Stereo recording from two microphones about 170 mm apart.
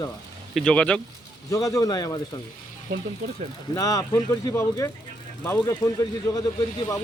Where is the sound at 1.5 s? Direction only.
20° left (ahead or behind).